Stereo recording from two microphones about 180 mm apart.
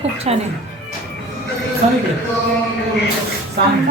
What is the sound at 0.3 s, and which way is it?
Speech, 35° right (ahead or behind).